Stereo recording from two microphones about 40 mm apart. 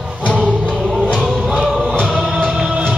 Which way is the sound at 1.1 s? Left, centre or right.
Right.